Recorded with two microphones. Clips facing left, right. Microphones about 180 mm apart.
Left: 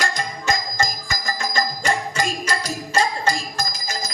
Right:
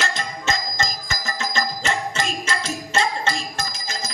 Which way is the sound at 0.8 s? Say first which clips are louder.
Left 2 dB; 25° right (ahead or behind).